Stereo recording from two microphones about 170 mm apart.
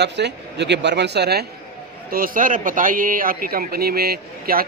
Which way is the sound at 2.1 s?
55° right (ahead or behind).